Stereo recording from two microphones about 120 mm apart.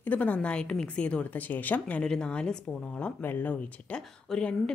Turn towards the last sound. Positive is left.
turn(degrees=5)  # may be behind; listen again after turning